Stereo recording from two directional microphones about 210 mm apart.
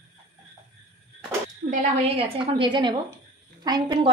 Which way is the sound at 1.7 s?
35° right (ahead or behind).